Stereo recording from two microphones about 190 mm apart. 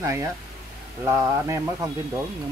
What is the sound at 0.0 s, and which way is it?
Speech, 15° right (ahead or behind).